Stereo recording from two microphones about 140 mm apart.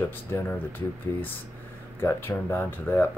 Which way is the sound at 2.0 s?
15° left (ahead or behind).